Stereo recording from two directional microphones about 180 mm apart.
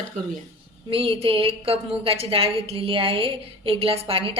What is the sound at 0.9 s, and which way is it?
A woman's voice, 30° right (ahead or behind).